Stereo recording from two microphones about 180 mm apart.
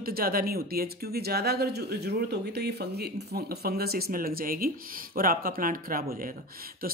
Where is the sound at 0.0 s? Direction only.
55° right (ahead or behind).